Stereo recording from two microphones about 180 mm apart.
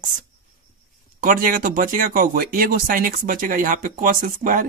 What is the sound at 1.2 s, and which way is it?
Speech, 50° right (ahead or behind).